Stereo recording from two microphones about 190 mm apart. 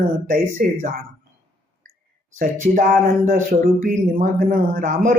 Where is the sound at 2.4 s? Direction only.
45° right (ahead or behind).